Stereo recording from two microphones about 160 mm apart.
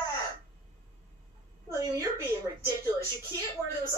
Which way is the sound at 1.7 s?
25° right (ahead or behind).